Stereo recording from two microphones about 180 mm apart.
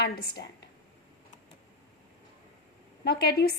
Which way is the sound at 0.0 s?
65° left (ahead or behind).